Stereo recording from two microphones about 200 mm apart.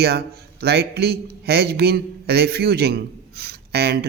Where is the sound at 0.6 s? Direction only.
50° right (ahead or behind).